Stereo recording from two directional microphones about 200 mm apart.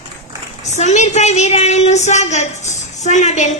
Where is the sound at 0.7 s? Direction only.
35° left (ahead or behind).